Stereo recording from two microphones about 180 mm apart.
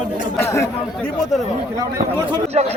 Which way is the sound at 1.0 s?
5° left (ahead or behind).